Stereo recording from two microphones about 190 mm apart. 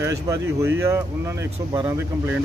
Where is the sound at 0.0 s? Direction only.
15° right (ahead or behind).